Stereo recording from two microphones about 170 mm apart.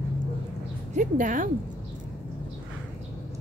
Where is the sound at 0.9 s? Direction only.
50° right (ahead or behind).